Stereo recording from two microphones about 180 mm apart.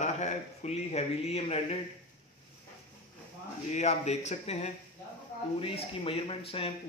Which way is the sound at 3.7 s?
40° left (ahead or behind).